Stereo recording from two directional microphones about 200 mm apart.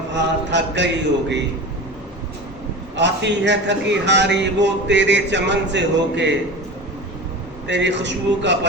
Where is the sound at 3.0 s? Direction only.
60° right (ahead or behind).